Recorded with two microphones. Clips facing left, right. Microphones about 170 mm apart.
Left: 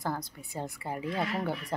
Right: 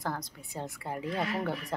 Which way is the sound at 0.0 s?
Centre (ahead or behind).